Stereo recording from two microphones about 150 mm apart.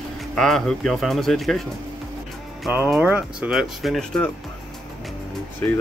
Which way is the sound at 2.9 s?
10° right (ahead or behind).